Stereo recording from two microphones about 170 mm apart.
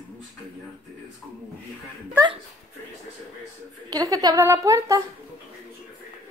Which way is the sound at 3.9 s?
20° right (ahead or behind).